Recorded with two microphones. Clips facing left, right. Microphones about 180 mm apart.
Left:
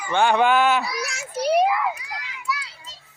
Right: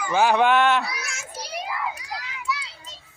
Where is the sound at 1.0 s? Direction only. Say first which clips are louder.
Left 11 dB; 65° left (ahead or behind).